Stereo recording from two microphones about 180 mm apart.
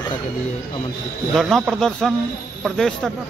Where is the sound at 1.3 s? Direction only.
Centre (ahead or behind).